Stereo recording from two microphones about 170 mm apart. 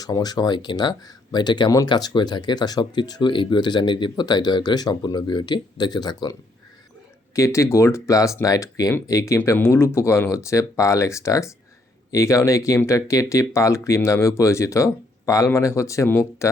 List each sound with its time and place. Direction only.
0.0 s speech: 25° left (ahead or behind)
7.3 s speech: 15° left (ahead or behind)